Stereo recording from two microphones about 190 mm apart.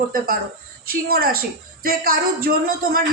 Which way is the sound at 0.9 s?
50° right (ahead or behind).